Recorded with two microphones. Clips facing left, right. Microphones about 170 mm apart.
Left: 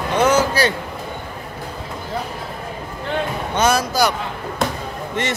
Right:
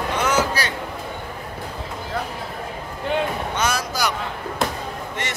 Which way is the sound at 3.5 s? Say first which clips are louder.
Left 9 dB; 30° left (ahead or behind).